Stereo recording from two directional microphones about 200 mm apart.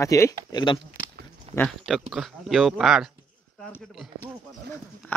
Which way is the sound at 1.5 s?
30° right (ahead or behind).